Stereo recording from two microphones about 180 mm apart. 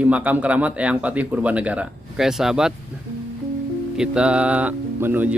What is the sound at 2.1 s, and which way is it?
Speech, 5° right (ahead or behind).